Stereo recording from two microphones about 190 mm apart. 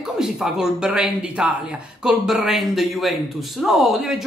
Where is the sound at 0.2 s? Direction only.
5° right (ahead or behind).